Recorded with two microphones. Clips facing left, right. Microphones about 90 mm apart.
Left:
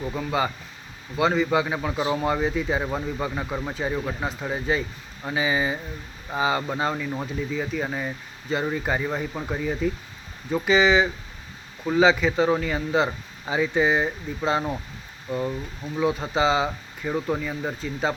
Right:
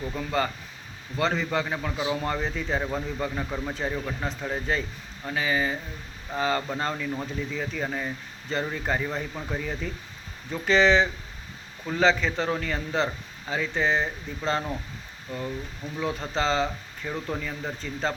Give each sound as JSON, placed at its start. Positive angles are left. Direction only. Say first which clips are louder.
{"t": 0.0, "sound": "speech", "louder": "left 2 dB", "side_deg": 10}
{"t": 15.3, "sound": "speech", "louder": "left 6 dB", "side_deg": 25}
{"t": 16.0, "sound": "speech", "louder": "left 5 dB", "side_deg": 5}